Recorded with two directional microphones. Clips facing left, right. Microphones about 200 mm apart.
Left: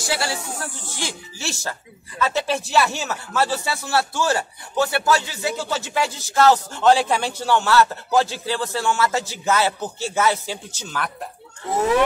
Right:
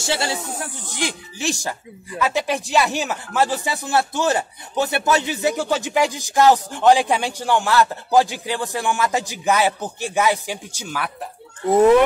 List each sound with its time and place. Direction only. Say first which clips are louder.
0.0 s speech: right 2 dB; 25° right (ahead or behind)